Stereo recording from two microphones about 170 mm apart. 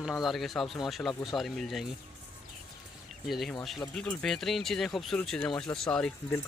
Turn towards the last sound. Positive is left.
turn(degrees=5)  # may be behind; listen again after turning